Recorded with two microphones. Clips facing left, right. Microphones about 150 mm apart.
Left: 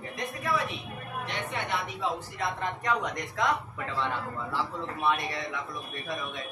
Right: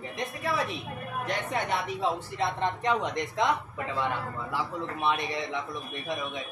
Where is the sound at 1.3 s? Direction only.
40° right (ahead or behind); by 3.5 s 25° right (ahead or behind).